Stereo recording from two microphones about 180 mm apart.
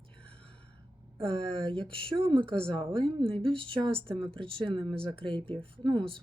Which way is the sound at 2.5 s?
5° left (ahead or behind).